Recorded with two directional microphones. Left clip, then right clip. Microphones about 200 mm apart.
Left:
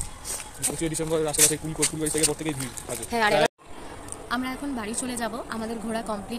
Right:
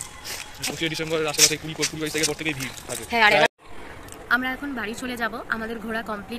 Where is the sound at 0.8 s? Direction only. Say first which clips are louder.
Right 1 dB; 20° left (ahead or behind).